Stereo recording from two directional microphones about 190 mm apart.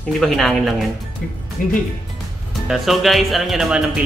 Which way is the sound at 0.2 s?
5° left (ahead or behind).